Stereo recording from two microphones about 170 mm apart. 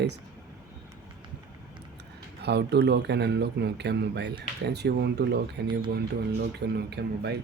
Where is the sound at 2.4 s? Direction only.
80° right.